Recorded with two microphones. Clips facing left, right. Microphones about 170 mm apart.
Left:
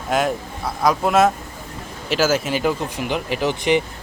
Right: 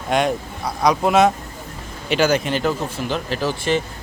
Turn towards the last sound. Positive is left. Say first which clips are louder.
# left 2 dB
turn(degrees=15)  # may be behind; listen again after turning